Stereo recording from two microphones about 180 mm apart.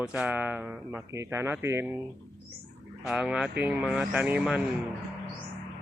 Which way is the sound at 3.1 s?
5° right (ahead or behind).